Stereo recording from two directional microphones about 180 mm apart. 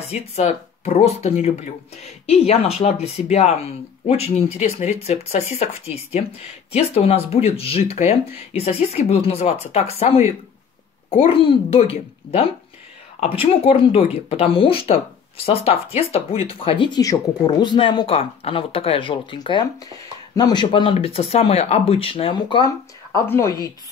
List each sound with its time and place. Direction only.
0.1 s speech: 35° left (ahead or behind)
23.1 s speech: 15° left (ahead or behind)